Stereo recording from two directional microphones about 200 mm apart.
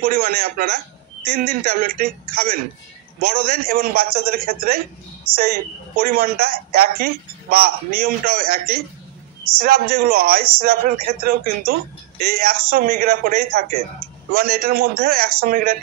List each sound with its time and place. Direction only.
0.0 s a man's voice: 45° right (ahead or behind)
6.0 s a man's voice: 45° right (ahead or behind)